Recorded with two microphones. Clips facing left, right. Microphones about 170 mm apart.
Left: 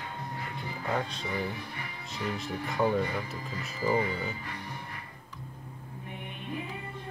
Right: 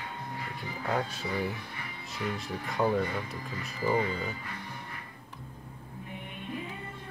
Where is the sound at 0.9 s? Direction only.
5° right (ahead or behind).